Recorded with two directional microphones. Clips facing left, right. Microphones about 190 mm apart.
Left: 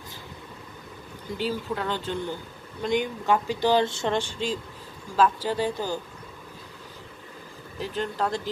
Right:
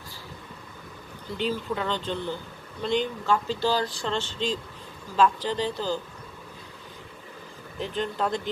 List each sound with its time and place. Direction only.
1.4 s speech: 5° left (ahead or behind)
8.0 s speech: centre (ahead or behind)